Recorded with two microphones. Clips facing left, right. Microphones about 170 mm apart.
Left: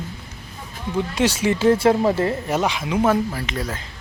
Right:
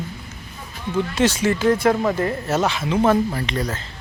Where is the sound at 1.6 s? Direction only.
30° left (ahead or behind).